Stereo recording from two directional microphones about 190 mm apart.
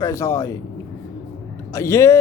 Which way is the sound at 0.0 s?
15° left (ahead or behind).